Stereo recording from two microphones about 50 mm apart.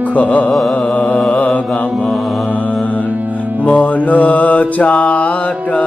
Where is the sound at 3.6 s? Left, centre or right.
Left.